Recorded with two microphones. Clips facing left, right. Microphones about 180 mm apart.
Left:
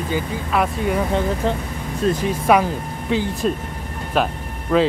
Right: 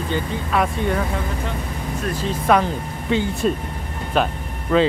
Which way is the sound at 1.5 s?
35° left (ahead or behind).